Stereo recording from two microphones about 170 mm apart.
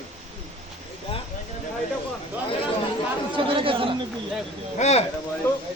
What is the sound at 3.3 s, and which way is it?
Chatter, 30° right (ahead or behind).